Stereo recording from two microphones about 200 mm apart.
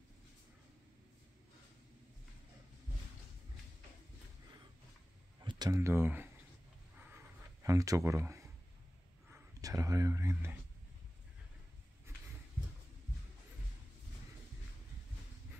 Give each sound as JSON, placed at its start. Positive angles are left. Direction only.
{"t": 5.4, "sound": "speech", "side_deg": -20}
{"t": 7.6, "sound": "speech", "side_deg": -15}